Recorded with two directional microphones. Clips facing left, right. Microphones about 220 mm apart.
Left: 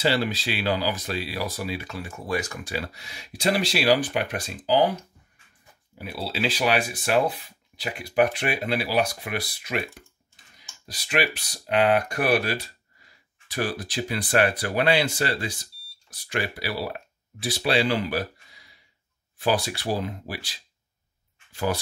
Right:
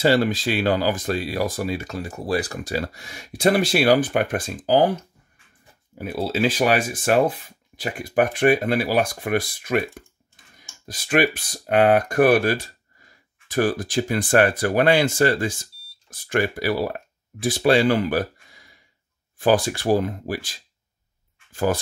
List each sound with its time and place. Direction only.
0.0 s speech: 50° right (ahead or behind)
5.9 s speech: 45° right (ahead or behind)